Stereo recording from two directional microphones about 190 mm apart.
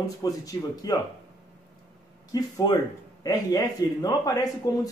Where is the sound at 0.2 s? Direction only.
20° left (ahead or behind).